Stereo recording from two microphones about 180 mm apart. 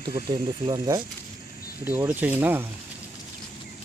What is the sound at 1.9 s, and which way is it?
Speech, 10° right (ahead or behind).